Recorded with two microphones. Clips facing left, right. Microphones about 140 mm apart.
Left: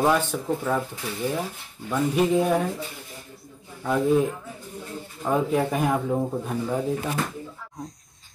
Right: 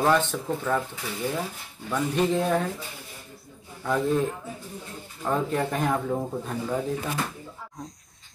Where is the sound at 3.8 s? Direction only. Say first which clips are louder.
Left 3 dB; 10° left (ahead or behind).